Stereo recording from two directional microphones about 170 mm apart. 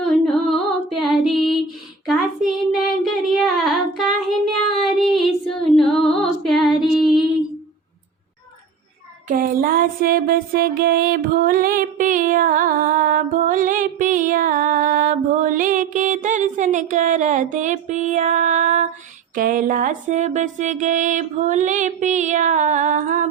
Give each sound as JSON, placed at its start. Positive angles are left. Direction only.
{"t": 0.0, "sound": "music", "side_deg": 5}
{"t": 1.2, "sound": "child singing", "side_deg": 0}
{"t": 4.8, "sound": "female singing", "side_deg": 0}
{"t": 9.3, "sound": "music", "side_deg": -55}